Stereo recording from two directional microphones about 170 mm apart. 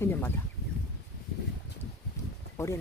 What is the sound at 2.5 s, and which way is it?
Speech, 15° left (ahead or behind).